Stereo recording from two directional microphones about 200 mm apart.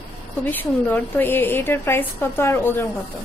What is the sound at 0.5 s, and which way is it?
A woman's voice, 10° left (ahead or behind).